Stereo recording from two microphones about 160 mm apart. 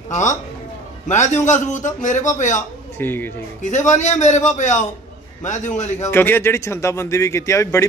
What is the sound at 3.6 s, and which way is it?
A man's voice, 50° left (ahead or behind).